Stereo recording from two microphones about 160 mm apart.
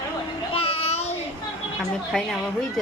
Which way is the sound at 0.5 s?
40° left (ahead or behind).